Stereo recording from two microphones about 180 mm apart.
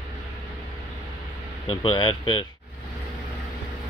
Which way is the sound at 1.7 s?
30° left (ahead or behind).